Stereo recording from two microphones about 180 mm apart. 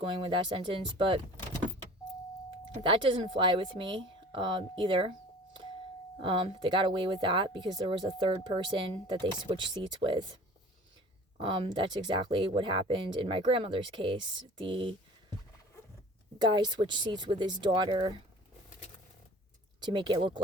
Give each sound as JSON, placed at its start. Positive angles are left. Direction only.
{"t": 0.0, "sound": "speech", "side_deg": -30}
{"t": 2.8, "sound": "speech", "side_deg": -30}
{"t": 6.1, "sound": "speech", "side_deg": -30}
{"t": 11.3, "sound": "speech", "side_deg": -30}
{"t": 16.4, "sound": "speech", "side_deg": -25}
{"t": 19.8, "sound": "speech", "side_deg": -25}